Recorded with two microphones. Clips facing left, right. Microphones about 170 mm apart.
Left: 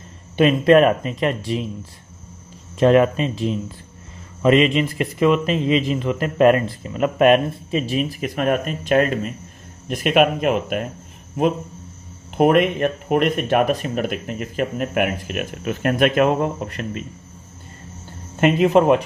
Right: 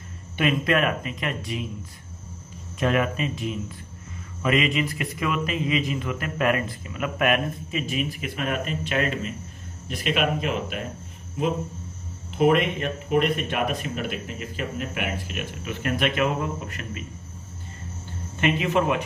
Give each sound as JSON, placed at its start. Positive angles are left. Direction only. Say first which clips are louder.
{"t": 0.4, "sound": "a man's voice", "louder": "left 9 dB", "side_deg": 30}
{"t": 2.8, "sound": "a man's voice", "louder": "left 9 dB", "side_deg": 30}
{"t": 12.4, "sound": "speech", "louder": "left 5 dB", "side_deg": 55}
{"t": 18.4, "sound": "a man's voice", "louder": "left 8 dB", "side_deg": 40}